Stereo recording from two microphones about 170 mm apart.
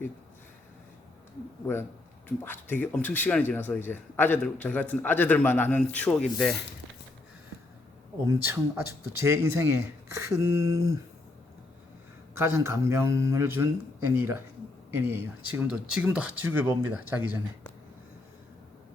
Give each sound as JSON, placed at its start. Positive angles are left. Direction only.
{"t": 2.4, "sound": "speech", "side_deg": 10}
{"t": 8.3, "sound": "speech", "side_deg": -15}
{"t": 12.4, "sound": "speech", "side_deg": -15}
{"t": 14.8, "sound": "speech", "side_deg": -15}